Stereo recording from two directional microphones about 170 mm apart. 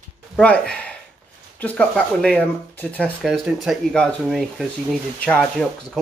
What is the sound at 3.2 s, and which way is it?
Speech, centre (ahead or behind).